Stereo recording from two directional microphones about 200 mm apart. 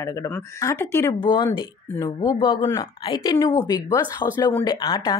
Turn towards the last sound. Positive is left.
turn(degrees=20)  # may be behind; listen again after turning